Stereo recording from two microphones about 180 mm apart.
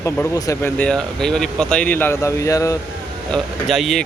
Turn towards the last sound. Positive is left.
turn(degrees=0)  # may be behind; listen again after turning